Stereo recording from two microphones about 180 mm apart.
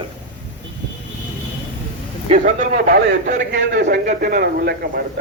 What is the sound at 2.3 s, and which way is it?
A man's voice, 45° right (ahead or behind).